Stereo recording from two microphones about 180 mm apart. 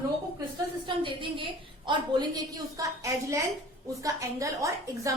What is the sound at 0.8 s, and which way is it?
A woman's voice, 30° right (ahead or behind).